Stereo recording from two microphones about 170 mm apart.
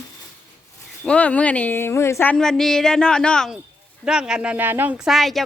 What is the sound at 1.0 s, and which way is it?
A woman's voice, 5° left (ahead or behind).